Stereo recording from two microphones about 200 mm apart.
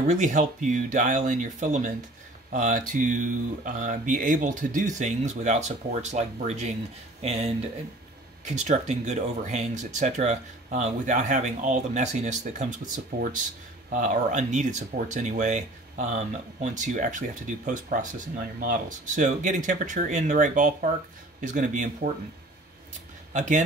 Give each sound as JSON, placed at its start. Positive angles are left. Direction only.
{"t": 0.0, "sound": "speech", "side_deg": -35}
{"t": 23.3, "sound": "speech", "side_deg": -40}